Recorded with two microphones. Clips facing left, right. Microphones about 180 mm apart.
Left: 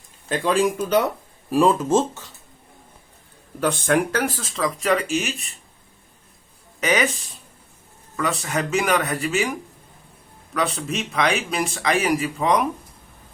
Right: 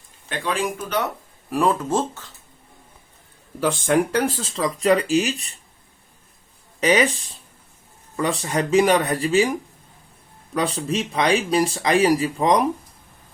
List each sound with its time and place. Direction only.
0.3 s speech: 40° left (ahead or behind)
1.5 s speech: 15° left (ahead or behind)
3.6 s speech: 10° right (ahead or behind); by 5.5 s 35° right (ahead or behind)
6.7 s speech: 30° right (ahead or behind)
8.1 s speech: 30° right (ahead or behind)
10.5 s speech: 30° right (ahead or behind)